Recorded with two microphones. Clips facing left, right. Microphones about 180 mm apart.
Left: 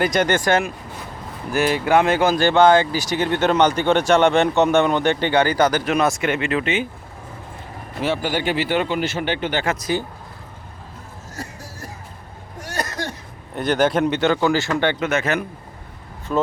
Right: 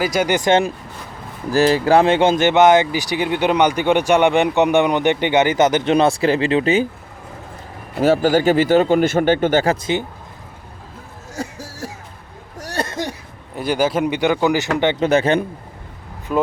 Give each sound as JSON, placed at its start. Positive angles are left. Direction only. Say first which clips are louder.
{"t": 0.0, "sound": "speech", "louder": "right 1 dB", "side_deg": -5}
{"t": 1.5, "sound": "speech", "louder": "right 4 dB", "side_deg": -35}
{"t": 8.0, "sound": "speech", "louder": "right 8 dB", "side_deg": -40}
{"t": 11.3, "sound": "a sound", "louder": "right 7 dB", "side_deg": -90}
{"t": 12.5, "sound": "a sound", "louder": "right 3 dB", "side_deg": -35}
{"t": 13.6, "sound": "speech", "louder": "even", "side_deg": -5}
{"t": 14.9, "sound": "speech", "louder": "right 6 dB", "side_deg": -35}
{"t": 16.3, "sound": "speech", "louder": "right 2 dB", "side_deg": -5}